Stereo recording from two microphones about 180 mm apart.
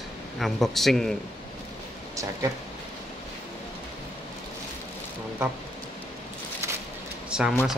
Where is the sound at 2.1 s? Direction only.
20° right (ahead or behind).